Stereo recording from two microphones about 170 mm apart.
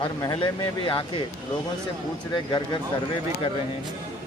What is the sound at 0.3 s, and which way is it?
Speech, 30° left (ahead or behind).